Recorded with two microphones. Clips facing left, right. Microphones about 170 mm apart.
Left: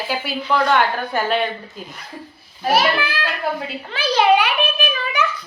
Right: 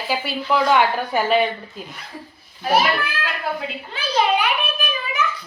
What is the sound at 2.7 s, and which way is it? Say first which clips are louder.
A child's voice: even; 75° left (ahead or behind).